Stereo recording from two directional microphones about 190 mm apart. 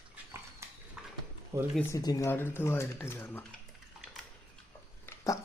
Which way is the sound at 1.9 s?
15° left (ahead or behind).